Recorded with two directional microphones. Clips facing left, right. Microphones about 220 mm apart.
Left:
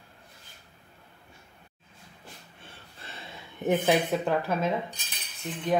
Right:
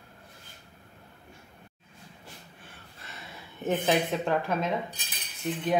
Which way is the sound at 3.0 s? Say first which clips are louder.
Left 2 dB; 30° left (ahead or behind).